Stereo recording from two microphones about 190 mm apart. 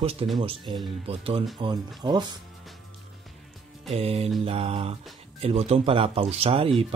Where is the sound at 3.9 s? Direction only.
30° right (ahead or behind).